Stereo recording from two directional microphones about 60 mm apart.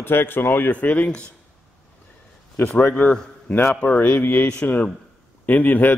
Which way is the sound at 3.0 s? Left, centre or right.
Left.